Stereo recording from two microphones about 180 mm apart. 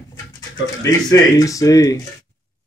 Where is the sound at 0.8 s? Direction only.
20° left (ahead or behind).